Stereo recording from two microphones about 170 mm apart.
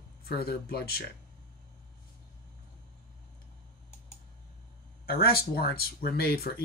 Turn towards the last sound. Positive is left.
turn(degrees=65)  # may be behind; listen again after turning